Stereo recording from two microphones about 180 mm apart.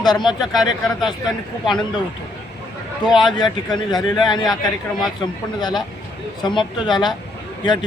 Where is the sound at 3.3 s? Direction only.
25° left (ahead or behind).